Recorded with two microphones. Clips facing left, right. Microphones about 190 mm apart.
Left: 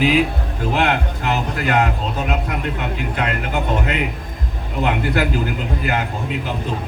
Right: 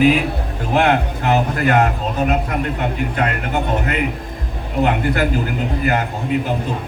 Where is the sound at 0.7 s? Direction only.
50° right (ahead or behind).